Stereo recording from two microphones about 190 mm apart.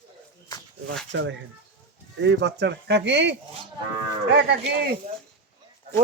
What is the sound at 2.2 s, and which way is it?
A man's voice, 65° right (ahead or behind).